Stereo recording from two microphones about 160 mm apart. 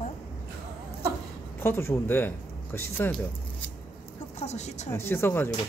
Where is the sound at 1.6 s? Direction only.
15° left (ahead or behind).